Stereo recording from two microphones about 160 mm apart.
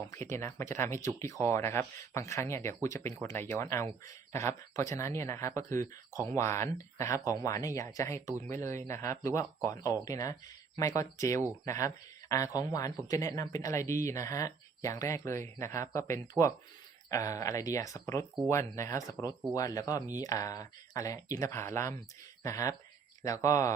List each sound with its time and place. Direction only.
0.1 s speech: 15° left (ahead or behind)